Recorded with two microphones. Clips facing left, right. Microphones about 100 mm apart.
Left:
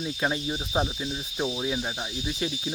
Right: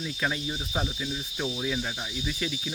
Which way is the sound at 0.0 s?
25° left (ahead or behind).